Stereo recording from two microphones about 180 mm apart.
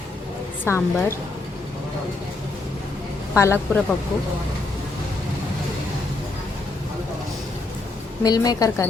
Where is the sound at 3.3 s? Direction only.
15° left (ahead or behind).